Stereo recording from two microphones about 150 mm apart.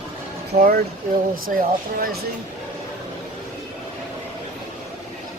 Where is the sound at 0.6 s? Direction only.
85° right.